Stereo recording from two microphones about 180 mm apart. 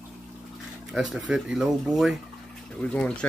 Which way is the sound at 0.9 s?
Centre (ahead or behind).